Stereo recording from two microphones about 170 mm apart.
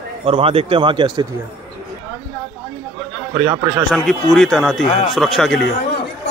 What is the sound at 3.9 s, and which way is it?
Speech, centre (ahead or behind).